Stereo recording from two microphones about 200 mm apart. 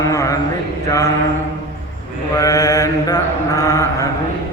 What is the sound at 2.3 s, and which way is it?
Mantra, 15° left (ahead or behind).